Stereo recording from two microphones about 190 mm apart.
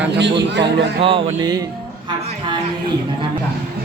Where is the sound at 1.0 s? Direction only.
25° right (ahead or behind).